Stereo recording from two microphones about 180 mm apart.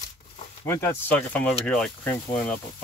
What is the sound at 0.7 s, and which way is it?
Speech, 15° left (ahead or behind).